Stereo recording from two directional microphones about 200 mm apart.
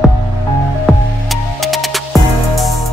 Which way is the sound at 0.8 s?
Centre (ahead or behind).